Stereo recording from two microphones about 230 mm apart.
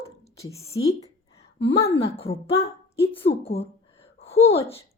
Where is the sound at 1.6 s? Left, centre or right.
Left.